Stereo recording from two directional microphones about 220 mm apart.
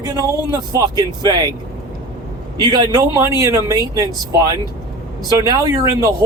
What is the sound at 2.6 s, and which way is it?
Speech, 20° right (ahead or behind).